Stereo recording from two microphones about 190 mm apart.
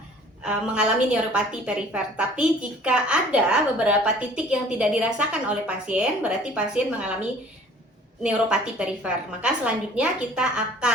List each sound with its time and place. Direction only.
0.4 s a woman's voice: 5° right (ahead or behind)